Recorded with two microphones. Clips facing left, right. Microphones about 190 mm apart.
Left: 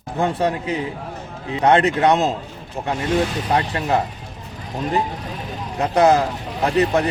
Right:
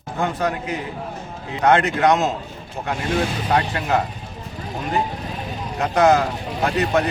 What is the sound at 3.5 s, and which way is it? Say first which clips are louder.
Speech: left 1 dB; 30° left (ahead or behind).